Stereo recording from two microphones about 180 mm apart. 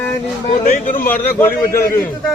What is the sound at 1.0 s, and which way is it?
Speech, 10° left (ahead or behind).